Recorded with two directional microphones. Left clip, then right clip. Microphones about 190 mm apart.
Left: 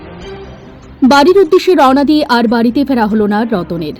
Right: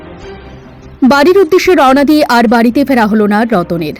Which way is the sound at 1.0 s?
15° right (ahead or behind).